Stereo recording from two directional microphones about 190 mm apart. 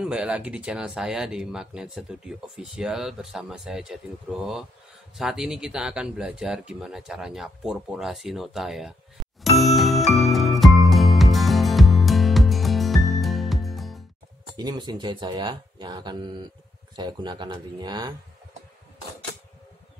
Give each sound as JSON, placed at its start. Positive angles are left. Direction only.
{"t": 0.0, "sound": "speech", "side_deg": -5}
{"t": 9.6, "sound": "music", "side_deg": 0}
{"t": 14.6, "sound": "speech", "side_deg": -20}